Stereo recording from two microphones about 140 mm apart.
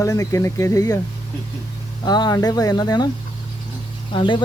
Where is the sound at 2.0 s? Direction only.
30° left (ahead or behind).